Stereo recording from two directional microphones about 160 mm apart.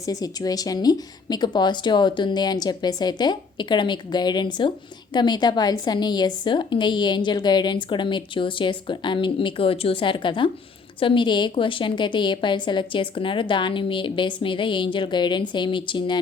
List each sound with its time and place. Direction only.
0.0 s a woman's voice: 20° left (ahead or behind)